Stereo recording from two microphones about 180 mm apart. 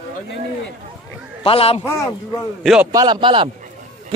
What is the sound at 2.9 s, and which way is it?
Speech, 25° right (ahead or behind).